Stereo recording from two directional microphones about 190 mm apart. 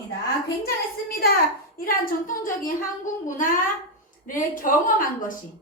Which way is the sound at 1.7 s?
50° left (ahead or behind).